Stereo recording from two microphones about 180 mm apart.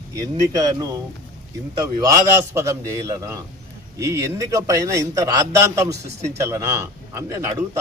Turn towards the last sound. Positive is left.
turn(degrees=-15)  # may be behind; listen again after turning